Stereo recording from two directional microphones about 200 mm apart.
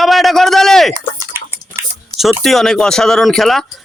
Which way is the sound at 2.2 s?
Centre (ahead or behind).